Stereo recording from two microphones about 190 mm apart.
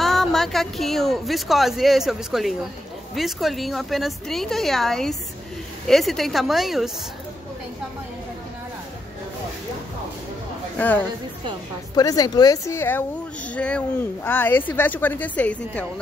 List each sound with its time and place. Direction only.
0.0 s speech: centre (ahead or behind)
11.9 s speech: 20° left (ahead or behind)